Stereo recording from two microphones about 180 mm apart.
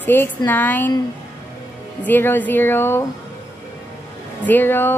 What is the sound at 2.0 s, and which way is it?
A woman's voice, 10° left (ahead or behind).